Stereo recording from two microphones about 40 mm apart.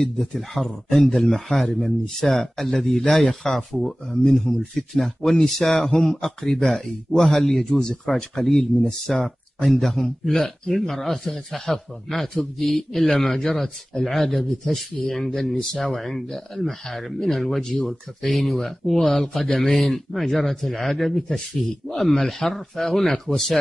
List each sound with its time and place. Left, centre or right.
0.0 s speech: centre
4.1 s speech: centre
5.7 s speech: centre
6.0 s speech: centre
7.7 s speech: centre